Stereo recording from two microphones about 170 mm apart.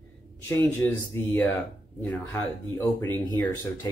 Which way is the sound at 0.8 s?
15° left (ahead or behind).